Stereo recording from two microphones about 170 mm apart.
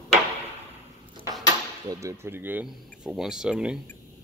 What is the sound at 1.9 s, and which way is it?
Speech, 20° right (ahead or behind).